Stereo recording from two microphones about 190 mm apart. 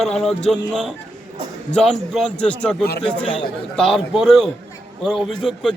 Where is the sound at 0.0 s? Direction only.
Centre (ahead or behind).